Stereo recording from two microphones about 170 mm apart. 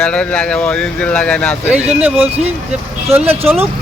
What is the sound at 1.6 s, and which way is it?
Speech, 10° right (ahead or behind).